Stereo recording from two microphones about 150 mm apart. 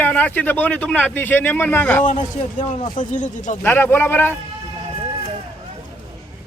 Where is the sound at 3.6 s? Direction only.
15° left (ahead or behind).